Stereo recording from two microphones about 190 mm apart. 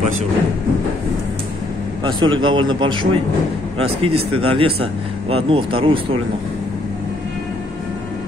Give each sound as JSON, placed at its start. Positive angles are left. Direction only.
{"t": 2.0, "sound": "speech", "side_deg": -25}